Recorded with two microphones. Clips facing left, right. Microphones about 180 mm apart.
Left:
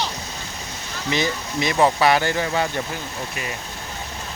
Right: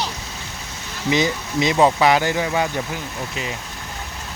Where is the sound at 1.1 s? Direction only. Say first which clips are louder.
Right 4 dB; 20° right (ahead or behind).